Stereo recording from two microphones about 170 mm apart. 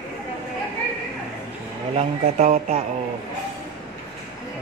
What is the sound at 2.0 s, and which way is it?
Speech, 45° right (ahead or behind).